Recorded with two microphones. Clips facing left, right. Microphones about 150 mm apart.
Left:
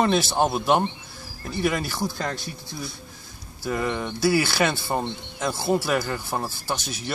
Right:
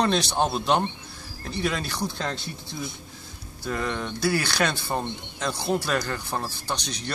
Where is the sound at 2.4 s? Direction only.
20° right (ahead or behind).